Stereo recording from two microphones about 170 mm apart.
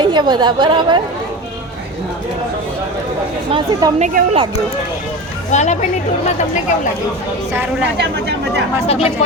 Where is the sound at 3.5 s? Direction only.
30° right (ahead or behind).